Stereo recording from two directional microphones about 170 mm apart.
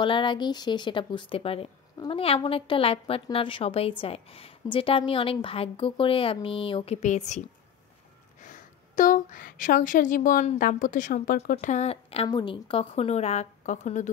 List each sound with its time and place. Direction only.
0.0 s a woman's voice: 30° left (ahead or behind); by 11.5 s 55° left (ahead or behind)
11.5 s a woman's voice: 40° left (ahead or behind)